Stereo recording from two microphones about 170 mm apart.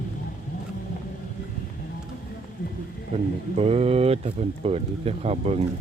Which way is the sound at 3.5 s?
35° right (ahead or behind).